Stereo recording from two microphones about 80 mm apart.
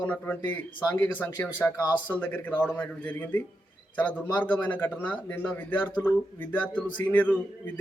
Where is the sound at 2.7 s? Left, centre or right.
Centre.